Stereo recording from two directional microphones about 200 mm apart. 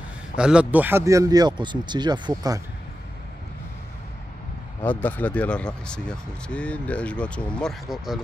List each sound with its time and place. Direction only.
0.4 s speech: 5° right (ahead or behind); by 2.6 s 20° right (ahead or behind)
4.8 s speech: 10° left (ahead or behind)